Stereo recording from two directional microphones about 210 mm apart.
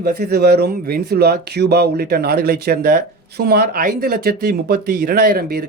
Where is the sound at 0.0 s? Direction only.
50° right (ahead or behind).